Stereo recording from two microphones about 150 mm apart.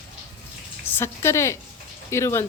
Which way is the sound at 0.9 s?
20° left (ahead or behind).